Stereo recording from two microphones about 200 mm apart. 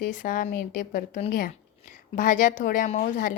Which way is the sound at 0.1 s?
40° left (ahead or behind).